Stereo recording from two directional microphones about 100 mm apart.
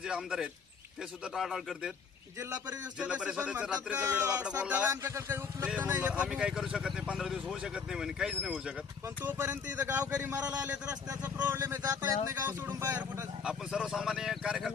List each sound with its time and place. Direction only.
0.0 s a man's voice: 10° right (ahead or behind)
3.0 s speech: 10° right (ahead or behind)
5.0 s speech: 25° right (ahead or behind); by 8.5 s 5° right (ahead or behind)
9.2 s speech: 20° right (ahead or behind)